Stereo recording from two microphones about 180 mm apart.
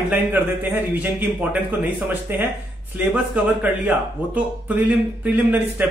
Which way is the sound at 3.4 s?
10° right (ahead or behind).